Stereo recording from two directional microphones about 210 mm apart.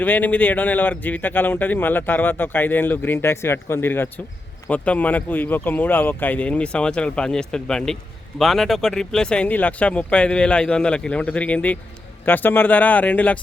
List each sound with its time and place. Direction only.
0.0 s a man's voice: 10° left (ahead or behind)